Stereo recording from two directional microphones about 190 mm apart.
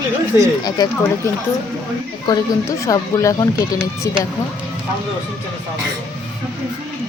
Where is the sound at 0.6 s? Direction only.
20° left (ahead or behind).